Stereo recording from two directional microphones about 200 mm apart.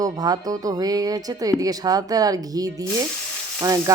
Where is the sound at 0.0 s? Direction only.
20° right (ahead or behind).